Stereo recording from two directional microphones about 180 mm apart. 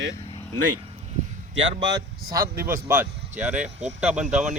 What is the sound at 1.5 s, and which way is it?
Speech, 85° right.